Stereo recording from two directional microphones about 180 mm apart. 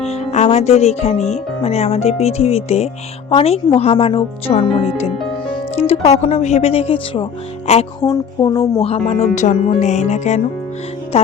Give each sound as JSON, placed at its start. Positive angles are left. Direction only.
{"t": 0.0, "sound": "music", "side_deg": 35}
{"t": 1.6, "sound": "speech", "side_deg": 35}
{"t": 8.0, "sound": "speech", "side_deg": 20}
{"t": 8.8, "sound": "speech", "side_deg": 35}